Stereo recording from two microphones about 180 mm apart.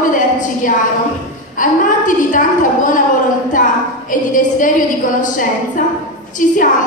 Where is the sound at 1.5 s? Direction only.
45° left (ahead or behind).